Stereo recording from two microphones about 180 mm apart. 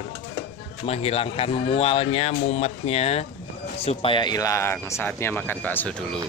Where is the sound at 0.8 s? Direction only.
35° left (ahead or behind); by 5.9 s 10° left (ahead or behind).